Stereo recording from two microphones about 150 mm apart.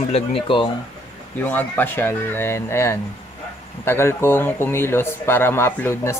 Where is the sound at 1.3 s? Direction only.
10° left (ahead or behind).